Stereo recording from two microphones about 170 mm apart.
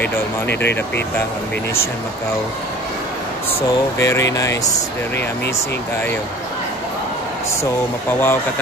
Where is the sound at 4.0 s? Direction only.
20° left (ahead or behind).